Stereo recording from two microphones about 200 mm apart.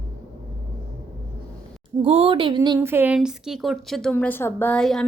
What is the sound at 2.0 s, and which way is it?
Speech, 30° right (ahead or behind).